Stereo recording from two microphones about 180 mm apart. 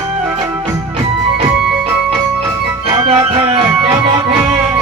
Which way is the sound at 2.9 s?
35° right (ahead or behind).